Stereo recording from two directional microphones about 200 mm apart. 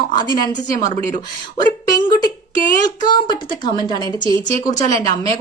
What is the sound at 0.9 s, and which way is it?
Speech, 40° right (ahead or behind).